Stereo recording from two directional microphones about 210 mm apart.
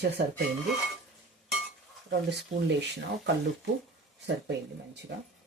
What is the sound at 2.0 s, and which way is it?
Speech, 55° right (ahead or behind).